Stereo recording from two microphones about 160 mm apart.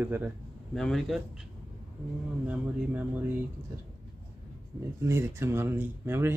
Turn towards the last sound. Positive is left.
turn(degrees=-15)  # may be behind; listen again after turning